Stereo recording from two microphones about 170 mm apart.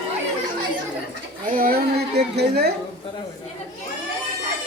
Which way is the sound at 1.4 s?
55° right (ahead or behind).